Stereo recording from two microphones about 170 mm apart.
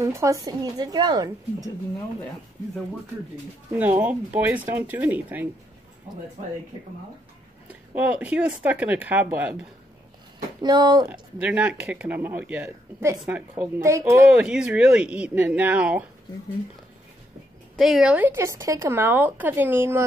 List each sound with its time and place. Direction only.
0.0 s speech: 20° right (ahead or behind)
4.0 s speech: 10° right (ahead or behind)
7.6 s speech: 10° right (ahead or behind)
10.6 s speech: 25° right (ahead or behind)
11.1 s speech: 5° right (ahead or behind)
17.7 s speech: centre (ahead or behind)